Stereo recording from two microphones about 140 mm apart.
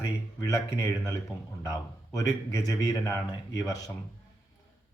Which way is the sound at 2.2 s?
25° left (ahead or behind).